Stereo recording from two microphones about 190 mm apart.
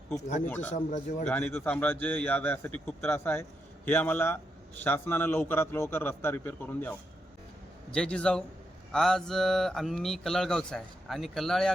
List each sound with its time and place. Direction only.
0.4 s a man's voice: 10° left (ahead or behind)
0.7 s a man's voice: 40° left (ahead or behind)
1.3 s a man's voice: 10° left (ahead or behind)